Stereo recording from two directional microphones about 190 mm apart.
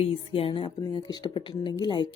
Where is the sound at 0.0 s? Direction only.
30° left (ahead or behind).